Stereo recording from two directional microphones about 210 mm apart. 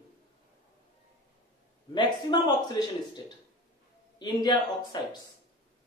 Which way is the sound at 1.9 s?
20° left (ahead or behind).